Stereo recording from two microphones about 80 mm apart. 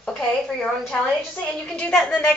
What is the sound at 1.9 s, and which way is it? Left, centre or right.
Speech, centre.